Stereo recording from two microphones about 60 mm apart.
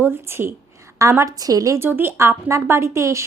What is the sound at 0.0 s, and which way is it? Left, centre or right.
Speech, right.